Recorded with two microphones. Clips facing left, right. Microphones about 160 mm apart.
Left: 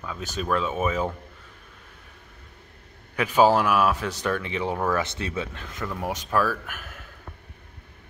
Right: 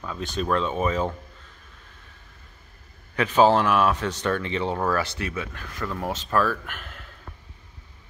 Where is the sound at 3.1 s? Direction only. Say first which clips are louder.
Right 1 dB; 10° left (ahead or behind).